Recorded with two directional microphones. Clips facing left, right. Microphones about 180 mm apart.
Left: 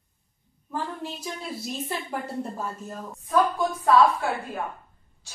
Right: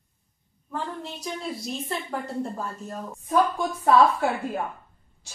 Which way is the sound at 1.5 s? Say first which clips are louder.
Even; 5° left (ahead or behind).